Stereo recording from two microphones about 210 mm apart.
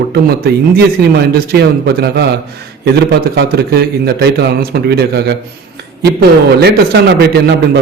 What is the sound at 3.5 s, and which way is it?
A man's voice, 50° right (ahead or behind).